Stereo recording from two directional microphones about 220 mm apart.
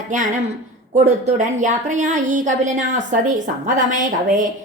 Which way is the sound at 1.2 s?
35° right (ahead or behind).